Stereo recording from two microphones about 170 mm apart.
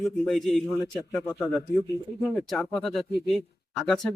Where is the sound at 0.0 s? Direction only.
Centre (ahead or behind).